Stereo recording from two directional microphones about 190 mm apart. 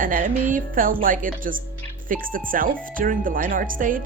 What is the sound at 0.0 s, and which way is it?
Speech, 45° right (ahead or behind).